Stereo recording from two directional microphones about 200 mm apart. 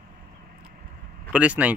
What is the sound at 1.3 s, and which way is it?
Speech, 5° right (ahead or behind).